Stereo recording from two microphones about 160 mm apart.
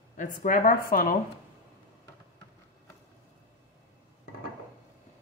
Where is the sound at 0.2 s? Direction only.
55° left (ahead or behind).